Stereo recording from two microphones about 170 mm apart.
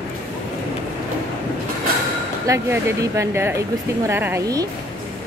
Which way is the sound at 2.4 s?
20° right (ahead or behind).